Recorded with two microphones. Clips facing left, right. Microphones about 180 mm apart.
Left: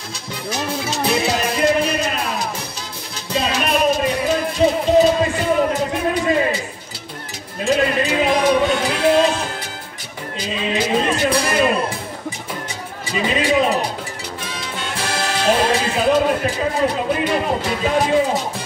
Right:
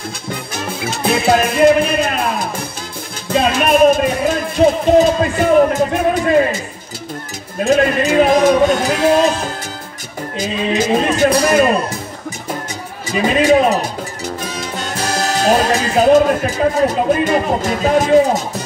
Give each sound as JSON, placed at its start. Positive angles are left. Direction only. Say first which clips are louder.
{"t": 0.3, "sound": "music", "louder": "left 1 dB", "side_deg": -55}
{"t": 7.6, "sound": "music", "louder": "right 4 dB", "side_deg": -45}
{"t": 10.3, "sound": "music", "louder": "right 4 dB", "side_deg": -45}
{"t": 13.1, "sound": "music", "louder": "right 6 dB", "side_deg": -45}